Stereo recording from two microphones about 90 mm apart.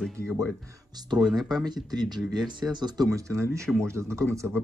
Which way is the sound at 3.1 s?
35° right (ahead or behind).